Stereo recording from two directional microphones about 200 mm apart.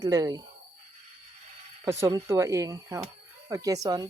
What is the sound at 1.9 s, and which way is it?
Speech, 15° right (ahead or behind).